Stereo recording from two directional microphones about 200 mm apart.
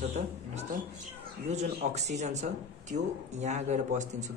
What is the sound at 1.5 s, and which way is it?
Speech, 35° right (ahead or behind).